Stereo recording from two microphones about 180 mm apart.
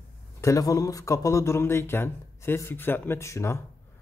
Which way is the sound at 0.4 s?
15° left (ahead or behind).